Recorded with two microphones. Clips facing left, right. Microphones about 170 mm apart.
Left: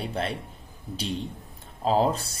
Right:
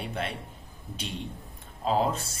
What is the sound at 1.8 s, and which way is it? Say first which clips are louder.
Speech: left 3 dB; 35° left (ahead or behind).